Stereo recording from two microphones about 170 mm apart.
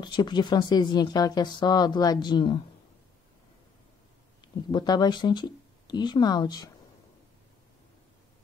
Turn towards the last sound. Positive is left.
turn(degrees=25)  # may be behind; listen again after turning